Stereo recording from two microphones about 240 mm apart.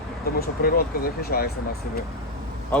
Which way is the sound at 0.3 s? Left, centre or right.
Left.